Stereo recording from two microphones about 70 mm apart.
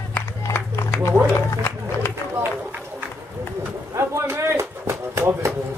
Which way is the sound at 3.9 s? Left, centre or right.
Right.